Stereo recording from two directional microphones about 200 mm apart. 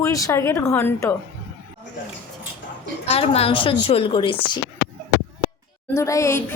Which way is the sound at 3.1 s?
30° left (ahead or behind).